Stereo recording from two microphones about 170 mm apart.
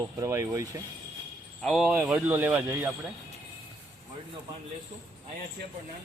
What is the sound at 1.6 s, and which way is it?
Speech, centre (ahead or behind).